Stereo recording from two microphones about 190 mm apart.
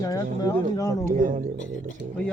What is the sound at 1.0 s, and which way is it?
Speech, 45° right (ahead or behind).